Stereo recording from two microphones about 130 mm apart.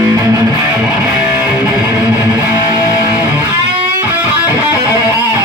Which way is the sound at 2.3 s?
35° right (ahead or behind).